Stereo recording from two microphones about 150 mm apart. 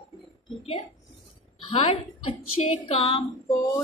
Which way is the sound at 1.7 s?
40° left (ahead or behind).